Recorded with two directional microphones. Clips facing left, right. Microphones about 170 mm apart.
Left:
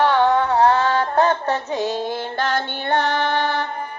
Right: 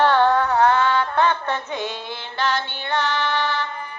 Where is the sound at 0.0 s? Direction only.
15° left (ahead or behind).